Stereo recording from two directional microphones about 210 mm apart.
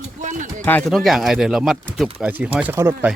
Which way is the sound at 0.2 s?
35° right (ahead or behind).